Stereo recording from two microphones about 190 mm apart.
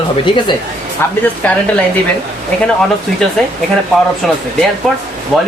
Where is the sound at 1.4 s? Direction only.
10° left (ahead or behind).